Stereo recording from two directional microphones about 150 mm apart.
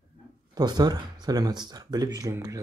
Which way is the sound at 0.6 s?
25° right (ahead or behind).